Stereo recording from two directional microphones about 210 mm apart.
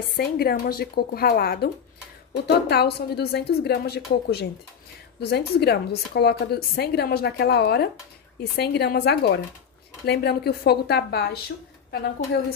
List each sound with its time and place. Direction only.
0.2 s a woman's voice: 45° left (ahead or behind)